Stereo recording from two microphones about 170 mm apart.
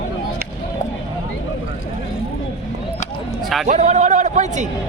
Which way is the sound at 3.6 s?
45° right (ahead or behind).